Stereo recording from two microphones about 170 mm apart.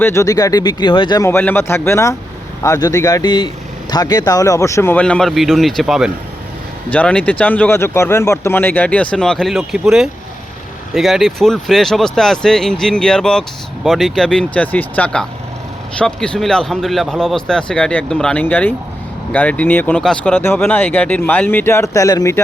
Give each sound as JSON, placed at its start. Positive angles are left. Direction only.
{"t": 0.0, "sound": "speech", "side_deg": 15}
{"t": 1.3, "sound": "speech", "side_deg": 10}